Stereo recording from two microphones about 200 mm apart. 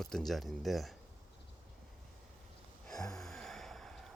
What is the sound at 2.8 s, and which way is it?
Gasp, centre (ahead or behind).